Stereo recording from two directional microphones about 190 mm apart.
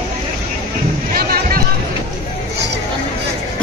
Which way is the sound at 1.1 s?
50° right (ahead or behind).